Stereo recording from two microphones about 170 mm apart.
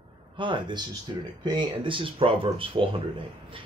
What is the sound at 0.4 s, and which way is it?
Speech, 30° right (ahead or behind).